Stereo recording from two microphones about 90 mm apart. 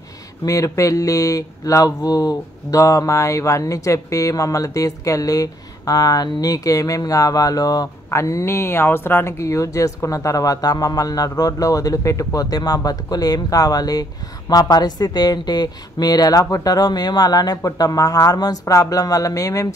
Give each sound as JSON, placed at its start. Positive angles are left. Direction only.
{"t": 0.5, "sound": "speech", "side_deg": 40}